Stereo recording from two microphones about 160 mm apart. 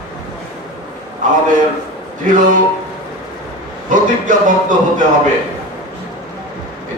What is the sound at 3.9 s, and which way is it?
Speech, 55° right (ahead or behind).